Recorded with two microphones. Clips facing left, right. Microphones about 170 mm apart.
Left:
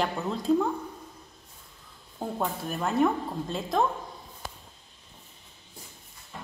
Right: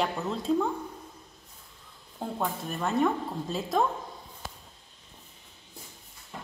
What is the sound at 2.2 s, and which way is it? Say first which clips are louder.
A woman's voice: left 1 dB; centre (ahead or behind).